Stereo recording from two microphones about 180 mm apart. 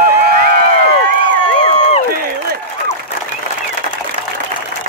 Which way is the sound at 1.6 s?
40° left (ahead or behind).